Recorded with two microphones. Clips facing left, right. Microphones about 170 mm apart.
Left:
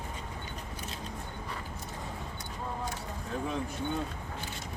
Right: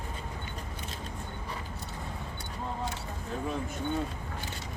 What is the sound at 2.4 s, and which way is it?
Vehicle, 30° right (ahead or behind).